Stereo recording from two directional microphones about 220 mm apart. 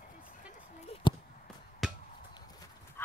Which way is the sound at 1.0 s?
20° left (ahead or behind).